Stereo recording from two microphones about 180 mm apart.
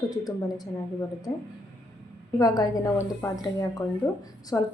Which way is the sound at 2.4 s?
20° left (ahead or behind).